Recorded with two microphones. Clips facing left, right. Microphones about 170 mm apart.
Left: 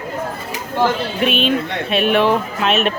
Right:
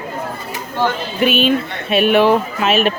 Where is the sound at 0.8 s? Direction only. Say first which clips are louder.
Even; centre (ahead or behind).